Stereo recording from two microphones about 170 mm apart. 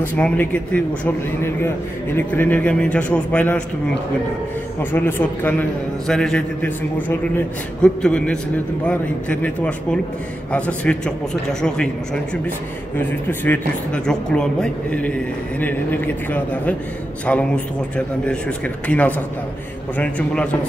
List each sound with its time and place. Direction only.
0.0 s a man's voice: 10° left (ahead or behind)
4.9 s a man's voice: 10° left (ahead or behind)
12.9 s a man's voice: 10° left (ahead or behind)
18.9 s a man's voice: 10° left (ahead or behind)